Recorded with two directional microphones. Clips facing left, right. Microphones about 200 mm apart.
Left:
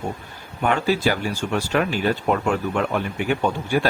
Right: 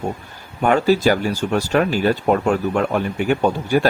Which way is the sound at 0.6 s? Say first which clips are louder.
Right 5 dB; 40° right (ahead or behind).